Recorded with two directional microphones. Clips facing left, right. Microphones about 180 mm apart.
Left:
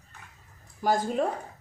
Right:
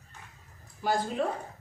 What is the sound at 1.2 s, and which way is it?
Speech, 45° left (ahead or behind).